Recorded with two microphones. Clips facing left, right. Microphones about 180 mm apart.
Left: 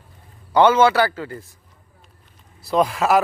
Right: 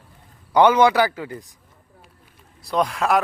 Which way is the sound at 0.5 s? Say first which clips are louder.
Even; 15° right (ahead or behind).